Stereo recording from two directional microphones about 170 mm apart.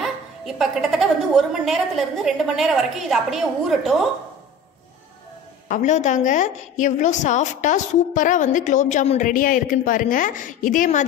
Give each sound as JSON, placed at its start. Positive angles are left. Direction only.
{"t": 0.0, "sound": "a woman's voice", "side_deg": 0}
{"t": 5.7, "sound": "a woman's voice", "side_deg": 45}
{"t": 9.3, "sound": "a woman's voice", "side_deg": 55}